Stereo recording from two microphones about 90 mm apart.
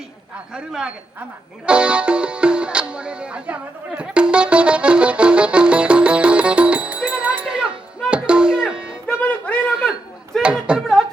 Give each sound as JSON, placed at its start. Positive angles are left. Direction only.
{"t": 0.5, "sound": "a man's voice", "side_deg": -10}
{"t": 1.6, "sound": "music", "side_deg": -10}
{"t": 9.0, "sound": "music", "side_deg": 15}
{"t": 10.4, "sound": "a sound", "side_deg": -10}